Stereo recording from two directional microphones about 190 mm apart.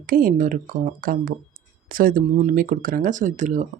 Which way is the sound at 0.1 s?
45° right (ahead or behind).